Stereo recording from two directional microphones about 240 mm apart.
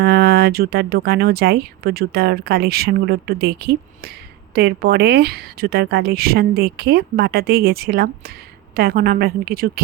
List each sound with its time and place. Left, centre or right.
0.0 s speech: right